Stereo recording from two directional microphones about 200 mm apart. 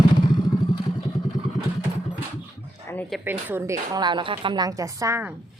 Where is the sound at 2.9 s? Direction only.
10° left (ahead or behind).